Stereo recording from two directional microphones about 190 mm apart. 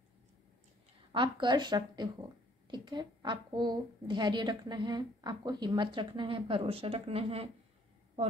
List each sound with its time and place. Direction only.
1.1 s a woman's voice: 25° right (ahead or behind)